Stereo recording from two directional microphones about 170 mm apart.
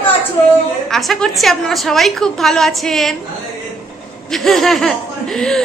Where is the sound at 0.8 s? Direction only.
Centre (ahead or behind).